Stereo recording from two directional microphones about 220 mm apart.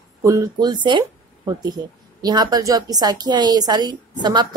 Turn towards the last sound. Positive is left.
turn(degrees=-20)  # may be behind; listen again after turning